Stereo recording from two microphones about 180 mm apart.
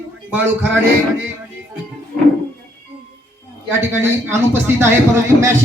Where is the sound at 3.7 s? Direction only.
15° right (ahead or behind).